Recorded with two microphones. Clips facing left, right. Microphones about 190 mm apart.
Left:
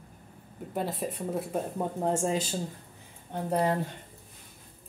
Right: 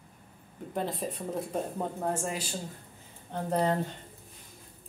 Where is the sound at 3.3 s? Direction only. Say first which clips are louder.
Left 1 dB; 10° left (ahead or behind).